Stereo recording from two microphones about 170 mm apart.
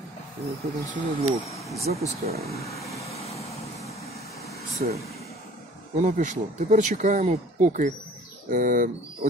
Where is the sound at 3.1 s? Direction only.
35° left (ahead or behind).